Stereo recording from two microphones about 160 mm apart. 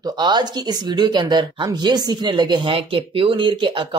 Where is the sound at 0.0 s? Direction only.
25° right (ahead or behind).